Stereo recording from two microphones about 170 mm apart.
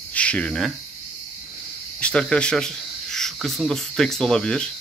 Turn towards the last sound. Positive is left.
turn(degrees=5)  # may be behind; listen again after turning